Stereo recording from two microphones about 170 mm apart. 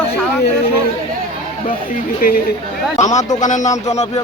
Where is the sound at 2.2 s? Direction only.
60° left (ahead or behind).